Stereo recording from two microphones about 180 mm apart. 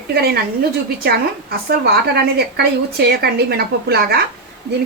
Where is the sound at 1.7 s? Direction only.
60° right (ahead or behind).